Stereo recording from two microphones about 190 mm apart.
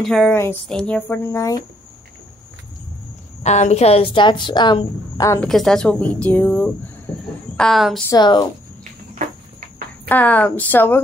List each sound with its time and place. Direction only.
0.0 s a woman's voice: centre (ahead or behind)
3.4 s a woman's voice: 35° left (ahead or behind); by 5.4 s 20° left (ahead or behind)
5.4 s a woman's voice: centre (ahead or behind)
8.1 s a woman's voice: 25° left (ahead or behind)
10.0 s a woman's voice: 10° left (ahead or behind)